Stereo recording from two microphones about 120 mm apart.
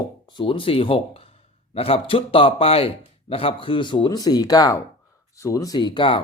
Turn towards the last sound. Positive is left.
turn(degrees=45)  # may be behind; listen again after turning